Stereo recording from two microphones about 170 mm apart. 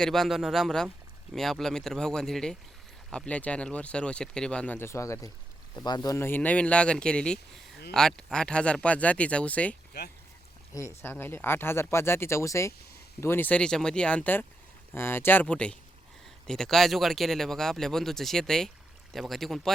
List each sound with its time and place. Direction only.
0.0 s speech: centre (ahead or behind)
10.0 s speech: 75° left (ahead or behind)
10.8 s speech: 15° left (ahead or behind)